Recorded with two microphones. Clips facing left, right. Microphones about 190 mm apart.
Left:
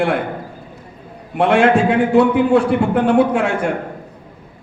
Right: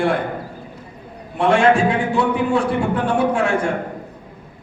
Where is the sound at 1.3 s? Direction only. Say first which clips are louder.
Left 2 dB; 60° left (ahead or behind).